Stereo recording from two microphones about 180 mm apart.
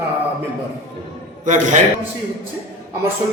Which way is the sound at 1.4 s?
45° right (ahead or behind).